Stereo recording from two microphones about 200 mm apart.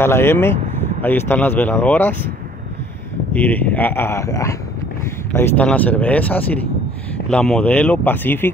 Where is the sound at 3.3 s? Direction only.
10° left (ahead or behind).